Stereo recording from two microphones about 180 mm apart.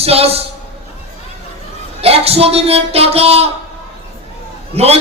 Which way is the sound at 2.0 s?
35° right (ahead or behind).